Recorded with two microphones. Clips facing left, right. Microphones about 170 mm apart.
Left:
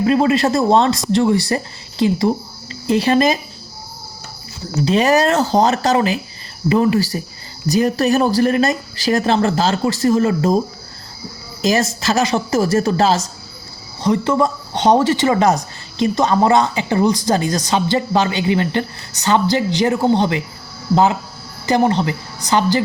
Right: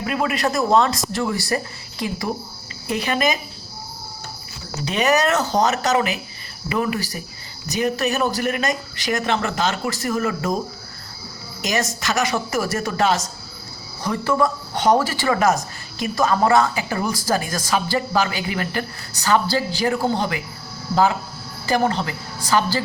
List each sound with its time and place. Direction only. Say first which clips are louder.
0.0 s speech: left 8 dB; 30° left (ahead or behind)
4.9 s speech: left 4 dB; 30° left (ahead or behind)
11.6 s speech: left 7 dB; 30° left (ahead or behind)